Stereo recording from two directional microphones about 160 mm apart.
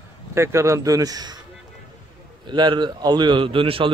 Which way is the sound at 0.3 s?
15° right (ahead or behind).